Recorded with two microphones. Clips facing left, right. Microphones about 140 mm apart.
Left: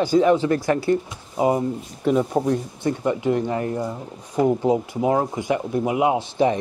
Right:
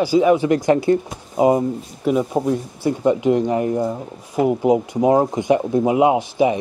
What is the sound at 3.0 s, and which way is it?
Speech, 20° right (ahead or behind).